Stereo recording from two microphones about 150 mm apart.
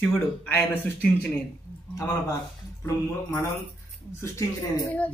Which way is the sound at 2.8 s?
20° left (ahead or behind).